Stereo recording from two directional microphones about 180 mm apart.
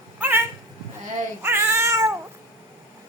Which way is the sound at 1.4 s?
15° right (ahead or behind).